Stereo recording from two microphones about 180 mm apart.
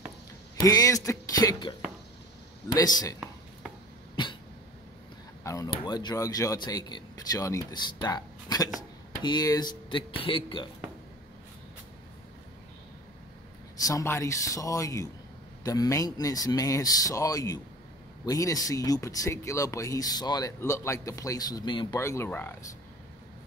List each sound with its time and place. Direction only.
0.6 s speech: 20° left (ahead or behind)
2.7 s speech: 20° left (ahead or behind)
5.4 s a sound: 15° left (ahead or behind)
5.7 s speech: 20° left (ahead or behind)
13.8 s speech: 15° left (ahead or behind)